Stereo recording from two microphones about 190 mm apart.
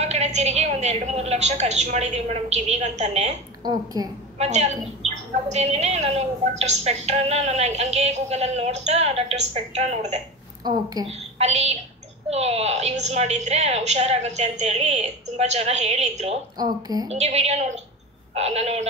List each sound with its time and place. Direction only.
0.0 s a woman's voice: 35° right (ahead or behind)
3.6 s a woman's voice: 20° right (ahead or behind)
4.4 s a woman's voice: 35° right (ahead or behind)
10.6 s a woman's voice: 20° right (ahead or behind)
11.1 s a woman's voice: 35° right (ahead or behind)
16.5 s a woman's voice: 20° right (ahead or behind)
17.1 s a woman's voice: 35° right (ahead or behind)